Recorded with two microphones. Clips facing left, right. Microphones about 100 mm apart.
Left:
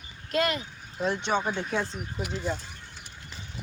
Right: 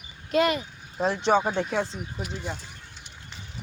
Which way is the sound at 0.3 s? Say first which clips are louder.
Right 4 dB; 15° right (ahead or behind).